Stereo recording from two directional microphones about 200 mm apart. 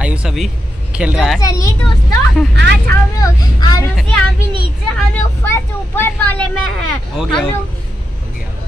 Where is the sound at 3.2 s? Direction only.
15° left (ahead or behind).